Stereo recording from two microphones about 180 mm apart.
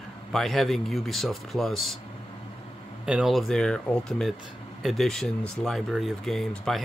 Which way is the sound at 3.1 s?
5° right (ahead or behind).